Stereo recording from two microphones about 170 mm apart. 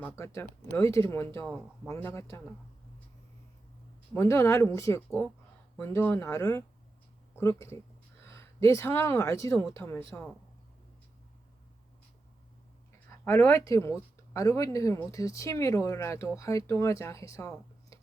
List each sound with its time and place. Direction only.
0.0 s speech: 15° left (ahead or behind)
1.5 s speech: 5° right (ahead or behind)
1.9 s speech: 15° left (ahead or behind)
4.1 s speech: 15° left (ahead or behind)
13.1 s speech: 10° left (ahead or behind)